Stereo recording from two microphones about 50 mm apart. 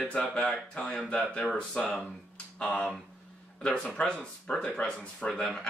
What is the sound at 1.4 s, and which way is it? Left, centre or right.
Speech, centre.